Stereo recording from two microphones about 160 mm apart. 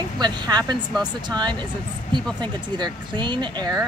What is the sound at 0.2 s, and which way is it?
Speech, 25° right (ahead or behind).